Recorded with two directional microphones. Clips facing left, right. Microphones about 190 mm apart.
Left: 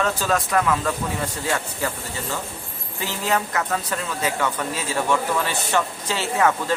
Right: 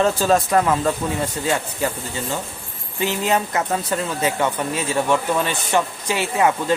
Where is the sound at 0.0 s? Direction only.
30° right (ahead or behind).